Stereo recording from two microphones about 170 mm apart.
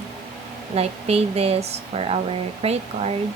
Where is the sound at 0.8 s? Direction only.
35° right (ahead or behind).